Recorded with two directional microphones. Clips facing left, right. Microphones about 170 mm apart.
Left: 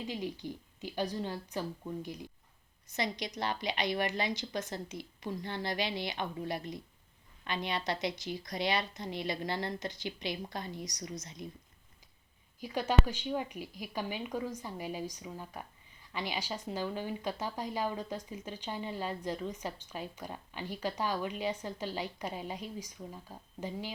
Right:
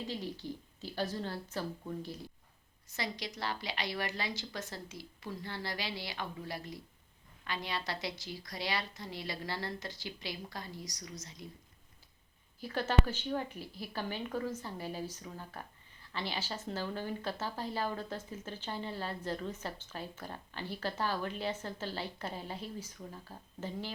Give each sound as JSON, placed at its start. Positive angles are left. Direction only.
{"t": 0.1, "sound": "a woman's voice", "side_deg": 15}
{"t": 12.5, "sound": "speech", "side_deg": 15}